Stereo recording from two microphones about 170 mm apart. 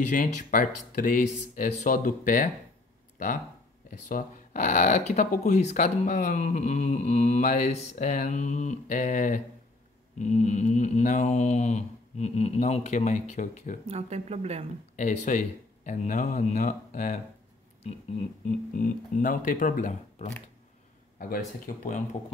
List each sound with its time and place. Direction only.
0.1 s speech: 55° left (ahead or behind)
3.9 s speech: 45° left (ahead or behind)
13.8 s speech: 40° right (ahead or behind)
15.0 s speech: 45° left (ahead or behind)
18.7 s speech: 50° left (ahead or behind)